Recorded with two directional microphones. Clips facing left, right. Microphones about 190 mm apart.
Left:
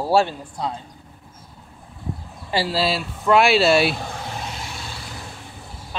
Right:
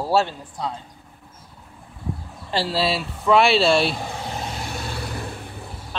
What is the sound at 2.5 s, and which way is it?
Speech, 5° left (ahead or behind).